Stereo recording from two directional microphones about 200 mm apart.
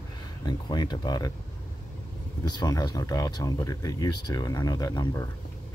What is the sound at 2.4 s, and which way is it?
Speech, 20° left (ahead or behind).